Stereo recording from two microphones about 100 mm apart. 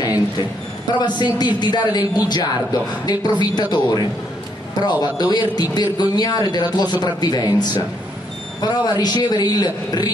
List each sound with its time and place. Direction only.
0.0 s a sound: 40° left (ahead or behind)
0.9 s a man's voice: 45° left (ahead or behind)
4.7 s a man's voice: 45° left (ahead or behind)